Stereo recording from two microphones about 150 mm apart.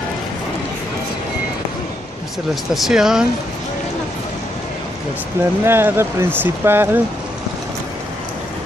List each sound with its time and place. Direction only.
2.7 s speech: 5° right (ahead or behind)
5.4 s speech: 15° right (ahead or behind)